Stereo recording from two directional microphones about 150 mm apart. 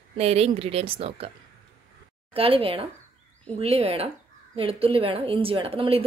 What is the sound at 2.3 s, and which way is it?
A woman's voice, 40° right (ahead or behind).